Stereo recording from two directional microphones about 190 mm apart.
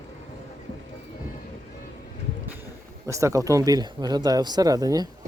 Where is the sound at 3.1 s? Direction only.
15° right (ahead or behind).